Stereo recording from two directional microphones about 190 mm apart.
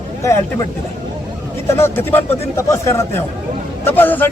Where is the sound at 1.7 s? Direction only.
10° left (ahead or behind).